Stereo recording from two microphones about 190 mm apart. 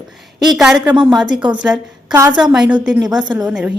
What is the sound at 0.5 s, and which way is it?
A woman's voice, centre (ahead or behind).